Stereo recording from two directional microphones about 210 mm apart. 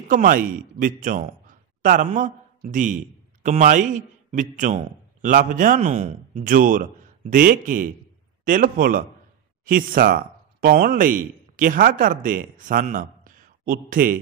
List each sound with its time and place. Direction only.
0.1 s a man's voice: 40° right (ahead or behind)